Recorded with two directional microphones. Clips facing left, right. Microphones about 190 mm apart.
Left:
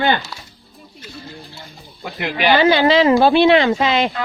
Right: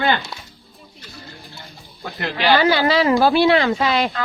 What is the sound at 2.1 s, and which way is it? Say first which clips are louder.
Speech: left 1 dB; 15° left (ahead or behind).